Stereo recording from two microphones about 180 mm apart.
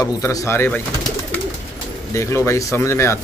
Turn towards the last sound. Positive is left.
turn(degrees=15)  # may be behind; listen again after turning